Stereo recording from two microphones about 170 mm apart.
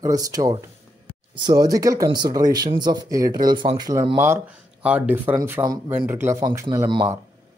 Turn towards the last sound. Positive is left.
turn(degrees=-20)  # may be behind; listen again after turning